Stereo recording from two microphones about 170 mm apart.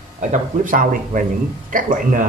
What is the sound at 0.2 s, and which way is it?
Speech, 50° right (ahead or behind).